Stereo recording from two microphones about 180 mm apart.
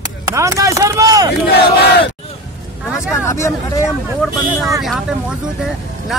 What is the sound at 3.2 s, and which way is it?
Speech, 15° left (ahead or behind).